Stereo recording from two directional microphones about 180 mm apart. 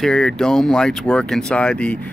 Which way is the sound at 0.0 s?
5° left (ahead or behind).